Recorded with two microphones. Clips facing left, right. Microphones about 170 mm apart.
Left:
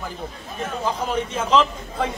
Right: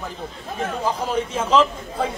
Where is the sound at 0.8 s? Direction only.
10° right (ahead or behind).